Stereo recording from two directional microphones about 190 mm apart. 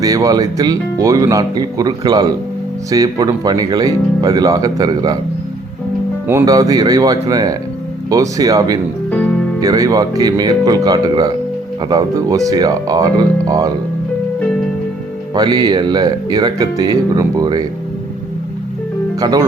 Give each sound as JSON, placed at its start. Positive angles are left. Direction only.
{"t": 0.0, "sound": "speech", "side_deg": -20}
{"t": 6.2, "sound": "speech", "side_deg": -15}
{"t": 9.0, "sound": "music", "side_deg": 5}
{"t": 9.6, "sound": "speech", "side_deg": -20}
{"t": 15.4, "sound": "speech", "side_deg": -20}
{"t": 19.2, "sound": "speech", "side_deg": -20}